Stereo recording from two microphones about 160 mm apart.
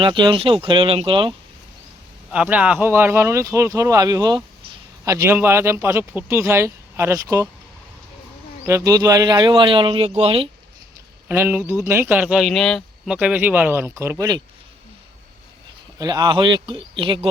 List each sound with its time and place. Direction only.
0.0 s speech: 30° right (ahead or behind)
2.3 s speech: 5° right (ahead or behind)
8.6 s speech: 20° right (ahead or behind); by 10.5 s 35° right (ahead or behind)
11.3 s speech: 15° right (ahead or behind); by 13.1 s 5° left (ahead or behind)
13.1 s speech: 10° right (ahead or behind)
16.0 s speech: 25° right (ahead or behind)